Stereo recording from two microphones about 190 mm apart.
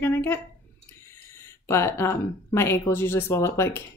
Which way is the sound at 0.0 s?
10° left (ahead or behind).